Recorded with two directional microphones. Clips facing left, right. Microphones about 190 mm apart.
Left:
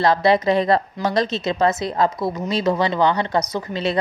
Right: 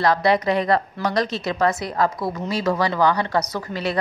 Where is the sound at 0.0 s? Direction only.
25° left (ahead or behind).